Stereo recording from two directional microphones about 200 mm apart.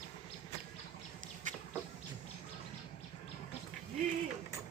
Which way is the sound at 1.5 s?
40° right (ahead or behind).